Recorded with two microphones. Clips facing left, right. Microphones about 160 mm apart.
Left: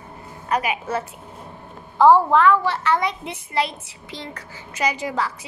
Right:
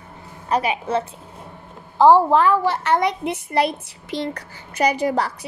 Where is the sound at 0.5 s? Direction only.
30° right (ahead or behind).